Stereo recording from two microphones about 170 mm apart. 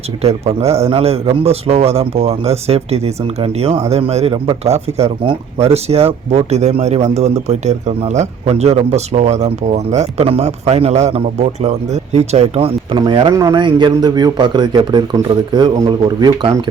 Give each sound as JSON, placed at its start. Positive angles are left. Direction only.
{"t": 0.2, "sound": "a man's voice", "side_deg": -35}